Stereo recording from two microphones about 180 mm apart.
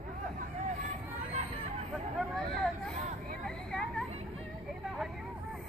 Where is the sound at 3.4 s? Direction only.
5° left (ahead or behind).